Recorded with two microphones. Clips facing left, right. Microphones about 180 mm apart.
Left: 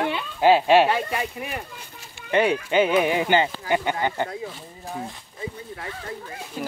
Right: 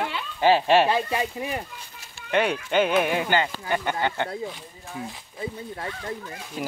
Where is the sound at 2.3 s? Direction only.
10° left (ahead or behind).